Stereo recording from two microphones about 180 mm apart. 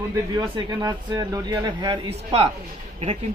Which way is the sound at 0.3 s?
25° right (ahead or behind).